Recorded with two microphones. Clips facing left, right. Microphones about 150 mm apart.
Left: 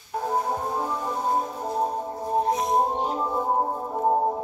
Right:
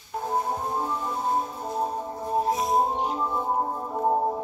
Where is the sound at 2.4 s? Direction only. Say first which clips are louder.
Left 1 dB; 5° right (ahead or behind).